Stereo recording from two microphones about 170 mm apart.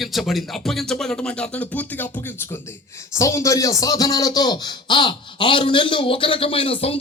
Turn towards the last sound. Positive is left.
turn(degrees=35)  # may be behind; listen again after turning